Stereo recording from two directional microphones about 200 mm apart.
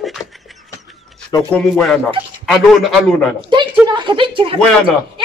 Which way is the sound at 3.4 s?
25° right (ahead or behind).